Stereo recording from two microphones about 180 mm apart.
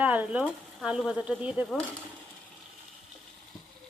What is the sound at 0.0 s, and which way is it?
Speech, 10° right (ahead or behind).